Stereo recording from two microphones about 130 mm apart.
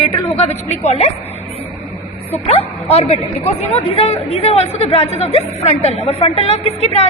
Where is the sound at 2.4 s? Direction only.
50° left (ahead or behind).